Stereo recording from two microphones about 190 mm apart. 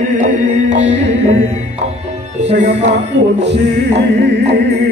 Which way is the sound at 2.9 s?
65° right (ahead or behind).